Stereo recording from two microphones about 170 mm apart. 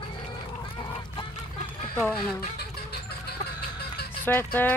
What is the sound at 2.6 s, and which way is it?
Music, 70° left (ahead or behind).